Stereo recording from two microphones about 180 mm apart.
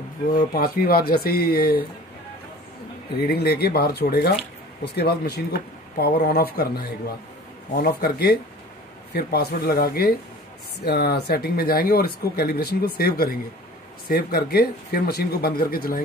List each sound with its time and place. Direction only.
0.3 s speech: 55° left (ahead or behind)
3.2 s speech: 60° left (ahead or behind)